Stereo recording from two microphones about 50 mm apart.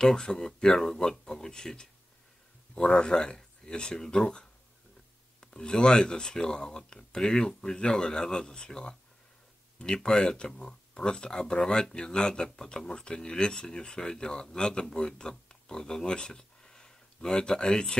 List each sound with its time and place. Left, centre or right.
0.0 s speech: centre